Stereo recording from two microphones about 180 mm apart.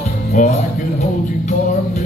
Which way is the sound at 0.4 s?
45° left (ahead or behind).